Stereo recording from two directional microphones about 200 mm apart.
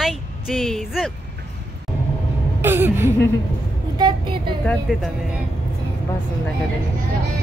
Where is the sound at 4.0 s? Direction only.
25° right (ahead or behind).